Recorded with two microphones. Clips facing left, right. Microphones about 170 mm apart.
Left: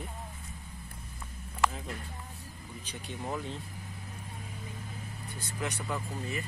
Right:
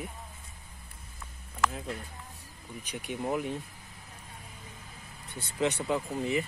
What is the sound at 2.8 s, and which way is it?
Speech, 15° right (ahead or behind).